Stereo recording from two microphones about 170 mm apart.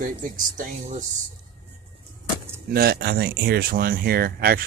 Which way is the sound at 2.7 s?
60° right (ahead or behind).